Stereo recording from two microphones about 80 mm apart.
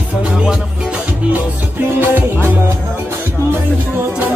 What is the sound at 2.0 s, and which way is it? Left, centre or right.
Music, right.